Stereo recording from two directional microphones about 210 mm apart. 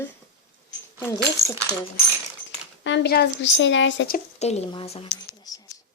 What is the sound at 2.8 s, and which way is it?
Speech, 55° left (ahead or behind).